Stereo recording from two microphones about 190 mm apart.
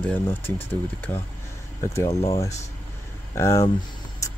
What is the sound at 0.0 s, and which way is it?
Speech, 10° left (ahead or behind).